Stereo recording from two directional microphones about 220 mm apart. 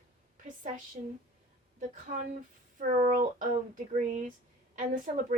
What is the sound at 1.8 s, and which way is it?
Speech, 40° right (ahead or behind).